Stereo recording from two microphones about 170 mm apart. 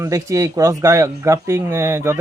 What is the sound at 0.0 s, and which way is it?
A man's voice, 15° right (ahead or behind).